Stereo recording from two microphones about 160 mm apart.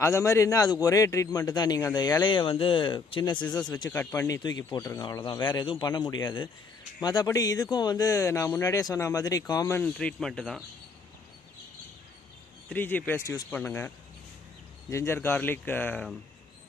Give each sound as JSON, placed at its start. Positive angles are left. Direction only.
{"t": 0.0, "sound": "a man's voice", "side_deg": 20}
{"t": 9.8, "sound": "speech", "side_deg": 5}
{"t": 12.6, "sound": "speech", "side_deg": 10}